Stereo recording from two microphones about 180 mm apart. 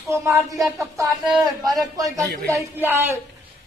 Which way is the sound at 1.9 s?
20° right (ahead or behind).